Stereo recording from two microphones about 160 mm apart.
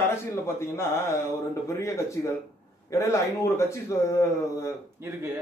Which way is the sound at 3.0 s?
20° left (ahead or behind).